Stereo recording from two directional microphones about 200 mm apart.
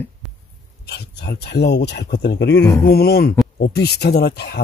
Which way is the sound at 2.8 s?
50° left (ahead or behind).